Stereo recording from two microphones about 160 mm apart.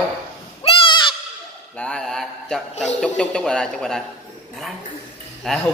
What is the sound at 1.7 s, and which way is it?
Speech, 5° left (ahead or behind).